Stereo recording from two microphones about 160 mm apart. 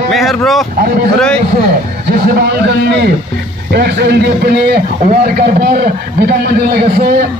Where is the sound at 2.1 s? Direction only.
65° right (ahead or behind); by 4.8 s 90° right.